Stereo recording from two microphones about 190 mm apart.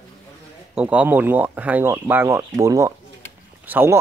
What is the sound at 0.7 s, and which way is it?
A man's voice, 5° right (ahead or behind).